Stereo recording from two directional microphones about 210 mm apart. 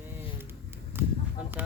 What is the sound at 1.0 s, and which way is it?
Fowl, 10° right (ahead or behind).